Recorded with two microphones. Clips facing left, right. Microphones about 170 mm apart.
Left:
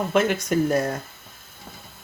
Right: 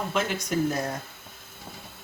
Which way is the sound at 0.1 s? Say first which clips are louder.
Left 9 dB; 60° left (ahead or behind).